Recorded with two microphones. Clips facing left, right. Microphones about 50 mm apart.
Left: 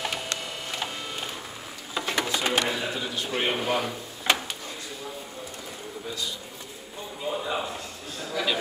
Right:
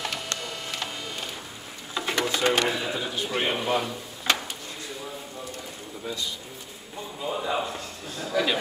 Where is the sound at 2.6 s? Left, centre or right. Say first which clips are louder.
Right 1 dB; centre.